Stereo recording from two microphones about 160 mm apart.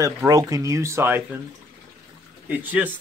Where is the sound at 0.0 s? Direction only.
20° right (ahead or behind).